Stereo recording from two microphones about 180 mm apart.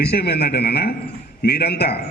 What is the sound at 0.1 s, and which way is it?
A man's voice, 60° left (ahead or behind).